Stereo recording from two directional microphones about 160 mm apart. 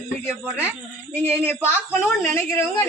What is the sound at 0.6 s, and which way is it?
Speech, 15° left (ahead or behind).